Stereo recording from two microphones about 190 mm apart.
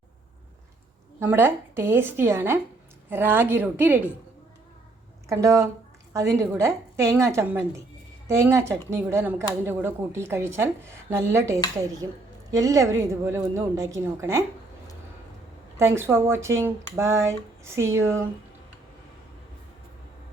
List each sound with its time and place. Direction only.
1.2 s speech: 10° right (ahead or behind)
5.3 s speech: 15° right (ahead or behind)
15.8 s speech: 15° right (ahead or behind)